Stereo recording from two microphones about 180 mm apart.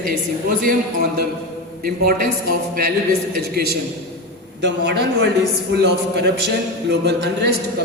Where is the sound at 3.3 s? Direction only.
60° right (ahead or behind).